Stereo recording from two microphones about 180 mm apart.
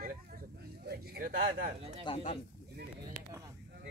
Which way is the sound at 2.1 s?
30° left (ahead or behind).